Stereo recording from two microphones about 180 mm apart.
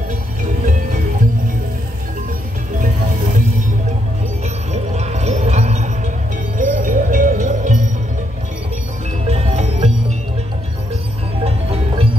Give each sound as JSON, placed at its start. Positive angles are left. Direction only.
{"t": 4.7, "sound": "music", "side_deg": -40}
{"t": 9.3, "sound": "music", "side_deg": -35}
{"t": 11.4, "sound": "music", "side_deg": -35}